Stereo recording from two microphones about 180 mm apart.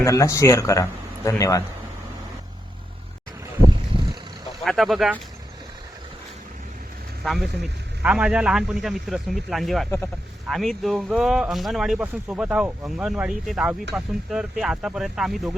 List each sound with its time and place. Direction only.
0.0 s speech: 15° left (ahead or behind)
4.6 s speech: centre (ahead or behind)
7.3 s speech: centre (ahead or behind)